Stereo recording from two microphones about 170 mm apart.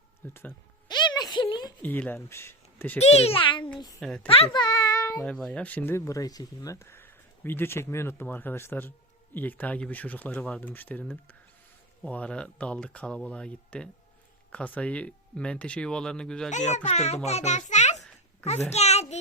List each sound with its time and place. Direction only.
0.2 s speech: 15° left (ahead or behind)
0.9 s a sound: 25° left (ahead or behind)
1.8 s speech: 10° left (ahead or behind)
3.0 s a child's voice: 35° left (ahead or behind)
4.0 s a woman's voice: 5° left (ahead or behind)
4.3 s a child's voice: 35° left (ahead or behind)
5.2 s speech: 5° left (ahead or behind)
16.5 s a child's voice: 45° left (ahead or behind)